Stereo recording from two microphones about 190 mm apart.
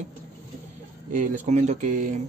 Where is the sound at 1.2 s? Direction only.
40° right (ahead or behind).